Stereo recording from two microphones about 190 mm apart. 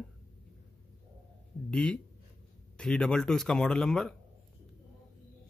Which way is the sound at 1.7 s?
5° left (ahead or behind).